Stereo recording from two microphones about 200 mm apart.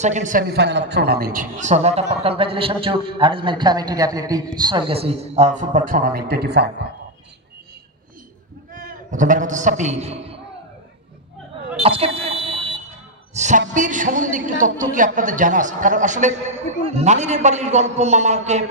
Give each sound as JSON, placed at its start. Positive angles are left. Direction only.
{"t": 0.0, "sound": "a woman's voice", "side_deg": -35}
{"t": 8.7, "sound": "a man's voice", "side_deg": -40}
{"t": 11.8, "sound": "alarm", "side_deg": -30}
{"t": 13.3, "sound": "a man's voice", "side_deg": -35}